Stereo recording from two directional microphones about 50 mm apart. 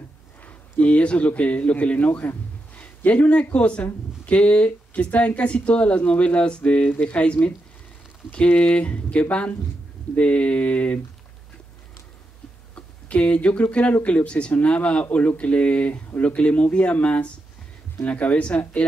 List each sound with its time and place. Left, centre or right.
0.5 s a man's voice: left
8.5 s speech: left
12.7 s speech: left